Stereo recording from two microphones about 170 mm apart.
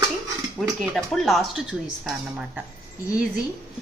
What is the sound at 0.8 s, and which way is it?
Speech, centre (ahead or behind).